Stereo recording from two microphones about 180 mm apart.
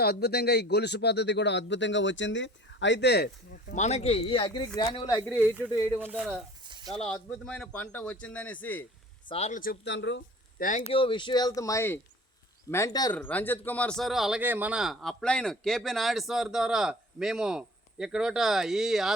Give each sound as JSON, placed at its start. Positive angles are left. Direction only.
{"t": 0.0, "sound": "speech", "side_deg": 60}
{"t": 6.0, "sound": "speech", "side_deg": -5}
{"t": 6.7, "sound": "a sound", "side_deg": -25}
{"t": 7.1, "sound": "a man's voice", "side_deg": 5}
{"t": 9.3, "sound": "speech", "side_deg": 35}
{"t": 9.8, "sound": "speech", "side_deg": 80}
{"t": 10.6, "sound": "speech", "side_deg": 45}
{"t": 10.9, "sound": "speech", "side_deg": 30}
{"t": 13.1, "sound": "speech", "side_deg": 10}